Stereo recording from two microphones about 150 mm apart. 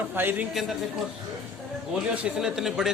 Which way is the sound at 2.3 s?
5° right (ahead or behind).